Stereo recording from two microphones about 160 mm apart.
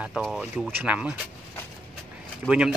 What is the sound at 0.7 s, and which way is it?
Speech, 10° right (ahead or behind).